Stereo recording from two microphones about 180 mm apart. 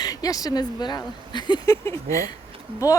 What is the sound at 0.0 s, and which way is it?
Speech, 20° left (ahead or behind).